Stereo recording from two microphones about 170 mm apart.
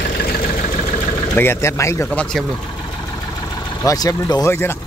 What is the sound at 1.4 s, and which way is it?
Speech, 15° left (ahead or behind).